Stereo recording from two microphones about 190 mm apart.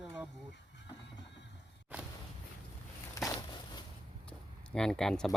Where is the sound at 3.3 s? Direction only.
20° left (ahead or behind).